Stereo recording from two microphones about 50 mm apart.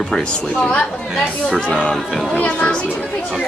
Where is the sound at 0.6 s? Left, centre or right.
Left.